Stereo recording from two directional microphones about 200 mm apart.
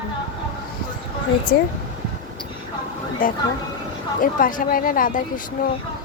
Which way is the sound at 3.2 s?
45° left (ahead or behind).